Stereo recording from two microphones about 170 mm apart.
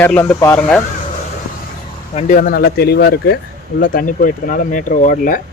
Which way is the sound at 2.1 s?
50° left (ahead or behind).